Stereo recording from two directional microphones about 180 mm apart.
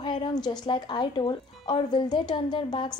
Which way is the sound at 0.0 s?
25° left (ahead or behind).